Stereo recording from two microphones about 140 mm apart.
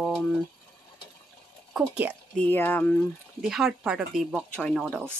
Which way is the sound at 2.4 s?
15° left (ahead or behind).